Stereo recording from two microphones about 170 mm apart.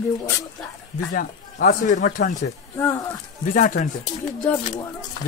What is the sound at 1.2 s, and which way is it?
Speech, 55° left (ahead or behind).